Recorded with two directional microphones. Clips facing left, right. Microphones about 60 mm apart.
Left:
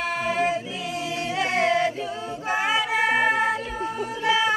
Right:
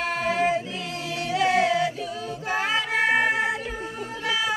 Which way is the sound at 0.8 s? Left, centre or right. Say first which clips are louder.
Left 2 dB; centre.